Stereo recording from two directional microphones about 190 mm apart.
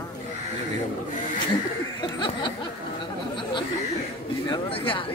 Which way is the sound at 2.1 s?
25° left (ahead or behind).